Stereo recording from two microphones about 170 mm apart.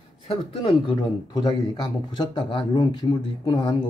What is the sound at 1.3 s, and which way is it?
Speech, 20° left (ahead or behind).